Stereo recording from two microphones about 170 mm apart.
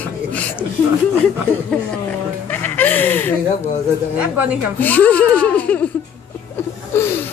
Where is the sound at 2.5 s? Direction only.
10° left (ahead or behind).